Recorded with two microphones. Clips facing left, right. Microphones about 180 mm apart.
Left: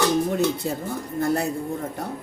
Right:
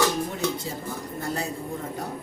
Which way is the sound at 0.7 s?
60° left (ahead or behind).